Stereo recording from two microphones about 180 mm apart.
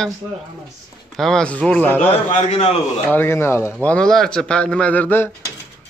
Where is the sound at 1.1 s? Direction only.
Centre (ahead or behind).